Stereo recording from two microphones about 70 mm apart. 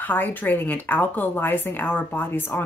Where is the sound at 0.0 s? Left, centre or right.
Left.